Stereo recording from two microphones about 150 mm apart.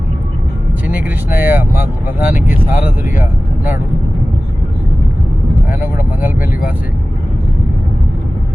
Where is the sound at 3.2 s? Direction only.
15° right (ahead or behind).